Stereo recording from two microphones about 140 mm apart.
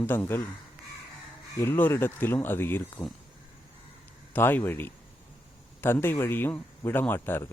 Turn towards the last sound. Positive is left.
turn(degrees=15)  # may be behind; listen again after turning